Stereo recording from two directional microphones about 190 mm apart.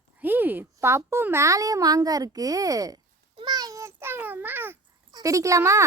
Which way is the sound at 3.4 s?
20° right (ahead or behind).